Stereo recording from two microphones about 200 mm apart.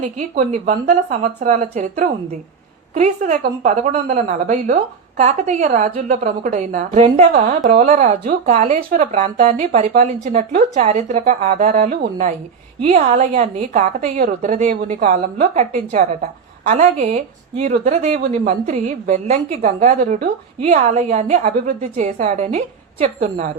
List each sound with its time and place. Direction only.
0.0 s a woman's voice: 35° right (ahead or behind)